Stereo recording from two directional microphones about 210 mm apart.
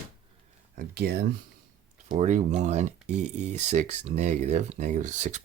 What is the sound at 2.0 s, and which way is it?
Speech, 35° right (ahead or behind).